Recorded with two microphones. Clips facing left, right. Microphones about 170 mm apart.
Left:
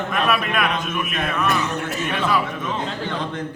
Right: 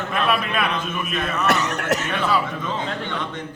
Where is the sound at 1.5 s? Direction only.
75° right (ahead or behind).